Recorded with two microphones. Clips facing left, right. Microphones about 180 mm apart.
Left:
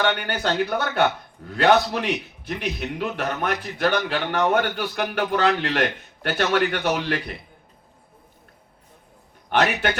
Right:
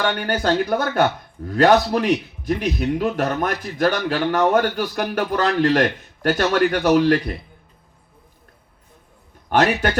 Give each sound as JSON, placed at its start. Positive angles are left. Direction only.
{"t": 0.0, "sound": "speech", "side_deg": -40}
{"t": 9.5, "sound": "speech", "side_deg": -40}